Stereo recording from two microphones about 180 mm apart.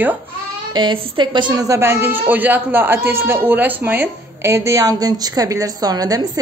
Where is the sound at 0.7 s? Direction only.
25° right (ahead or behind).